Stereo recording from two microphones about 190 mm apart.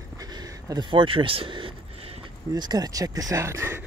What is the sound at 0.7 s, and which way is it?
Speech, 25° right (ahead or behind).